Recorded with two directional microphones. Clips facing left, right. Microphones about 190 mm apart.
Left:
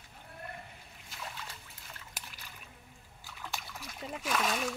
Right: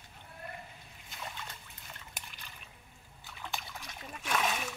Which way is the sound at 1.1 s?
Centre (ahead or behind).